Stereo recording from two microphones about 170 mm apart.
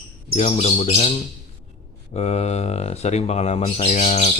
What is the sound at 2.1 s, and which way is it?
Speech, 40° left (ahead or behind).